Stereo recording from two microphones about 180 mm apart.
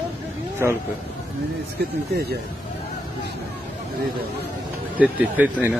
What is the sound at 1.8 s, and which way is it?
Speech, 65° right (ahead or behind).